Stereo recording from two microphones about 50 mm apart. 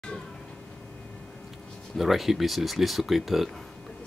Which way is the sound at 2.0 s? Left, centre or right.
Centre.